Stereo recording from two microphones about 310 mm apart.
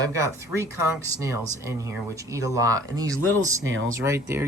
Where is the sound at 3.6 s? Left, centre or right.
Right.